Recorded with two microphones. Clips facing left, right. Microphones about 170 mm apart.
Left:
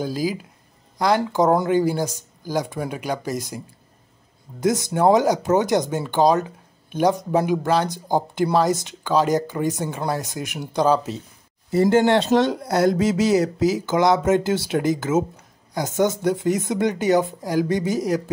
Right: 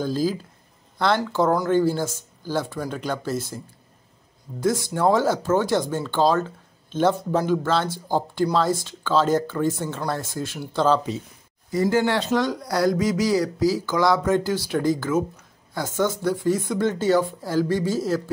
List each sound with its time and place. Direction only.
0.0 s speech: 10° left (ahead or behind)
11.7 s speech: 25° left (ahead or behind)